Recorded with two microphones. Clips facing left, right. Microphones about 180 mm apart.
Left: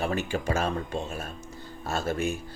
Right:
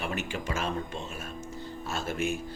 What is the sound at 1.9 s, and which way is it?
Speech, 35° left (ahead or behind).